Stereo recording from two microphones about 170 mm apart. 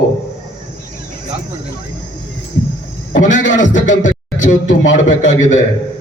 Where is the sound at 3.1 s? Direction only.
45° left (ahead or behind).